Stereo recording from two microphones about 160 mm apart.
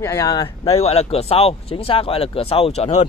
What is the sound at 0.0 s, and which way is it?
Speech, 20° left (ahead or behind).